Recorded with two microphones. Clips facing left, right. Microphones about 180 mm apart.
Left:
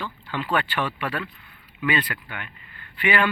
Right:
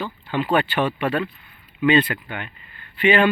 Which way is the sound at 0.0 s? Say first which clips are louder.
Right 6 dB; 20° right (ahead or behind).